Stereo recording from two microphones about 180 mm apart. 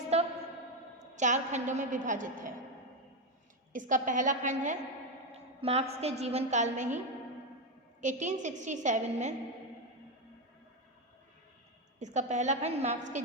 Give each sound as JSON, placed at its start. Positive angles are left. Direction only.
{"t": 0.1, "sound": "a sound", "side_deg": -35}
{"t": 1.1, "sound": "a woman's voice", "side_deg": -40}
{"t": 3.7, "sound": "a woman's voice", "side_deg": -45}
{"t": 8.0, "sound": "a woman's voice", "side_deg": -40}
{"t": 11.9, "sound": "a woman's voice", "side_deg": -40}